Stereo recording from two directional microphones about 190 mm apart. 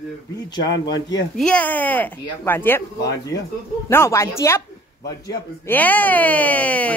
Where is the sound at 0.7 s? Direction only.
20° left (ahead or behind).